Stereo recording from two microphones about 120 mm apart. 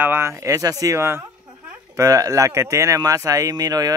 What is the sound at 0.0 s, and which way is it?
Speech, 20° right (ahead or behind).